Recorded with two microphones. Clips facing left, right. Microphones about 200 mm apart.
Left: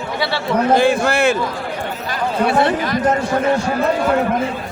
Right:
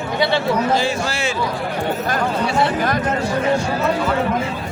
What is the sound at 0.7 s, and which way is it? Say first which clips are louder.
Speech: left 6 dB; 55° left (ahead or behind).